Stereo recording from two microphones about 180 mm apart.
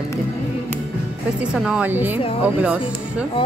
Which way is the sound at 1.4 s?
5° right (ahead or behind).